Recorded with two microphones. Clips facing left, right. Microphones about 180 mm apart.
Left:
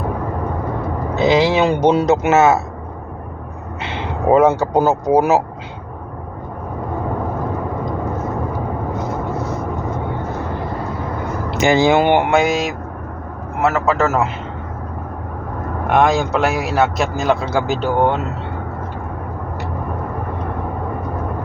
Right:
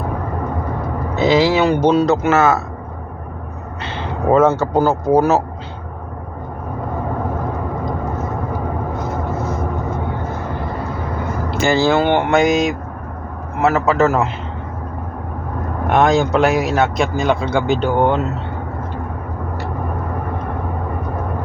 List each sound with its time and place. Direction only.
1.2 s speech: 20° left (ahead or behind)
3.9 s speech: 15° left (ahead or behind)
11.5 s speech: 15° left (ahead or behind)
15.9 s speech: 5° left (ahead or behind)